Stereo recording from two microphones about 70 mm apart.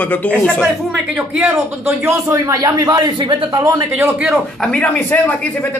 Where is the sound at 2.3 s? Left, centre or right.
Right.